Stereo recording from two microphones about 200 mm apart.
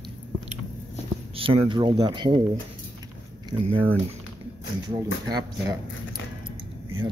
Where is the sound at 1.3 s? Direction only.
25° right (ahead or behind).